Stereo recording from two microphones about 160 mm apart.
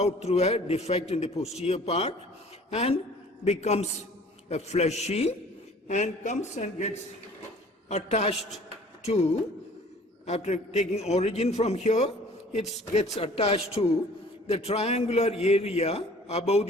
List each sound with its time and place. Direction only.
0.0 s a man's voice: 40° left (ahead or behind)